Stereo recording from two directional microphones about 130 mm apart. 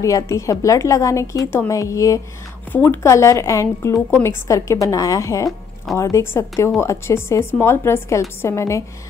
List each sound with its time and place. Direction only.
0.0 s a woman's voice: 25° left (ahead or behind)